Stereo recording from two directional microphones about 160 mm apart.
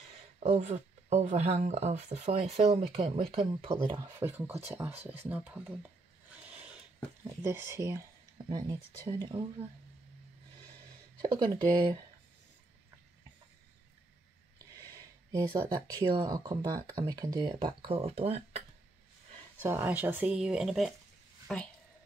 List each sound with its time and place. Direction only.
0.4 s speech: 45° right (ahead or behind); by 4.2 s 30° right (ahead or behind)
4.2 s speech: 15° right (ahead or behind)
6.3 s a sound: 5° right (ahead or behind)
7.4 s speech: 15° right (ahead or behind); by 9.7 s 30° right (ahead or behind)
11.1 s speech: 30° right (ahead or behind)
14.8 s speech: 20° right (ahead or behind); by 18.6 s 40° right (ahead or behind)
19.6 s speech: 10° right (ahead or behind)